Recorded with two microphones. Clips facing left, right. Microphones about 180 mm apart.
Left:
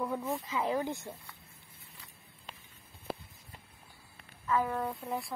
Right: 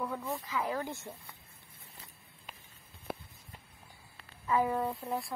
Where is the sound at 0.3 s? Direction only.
25° left (ahead or behind).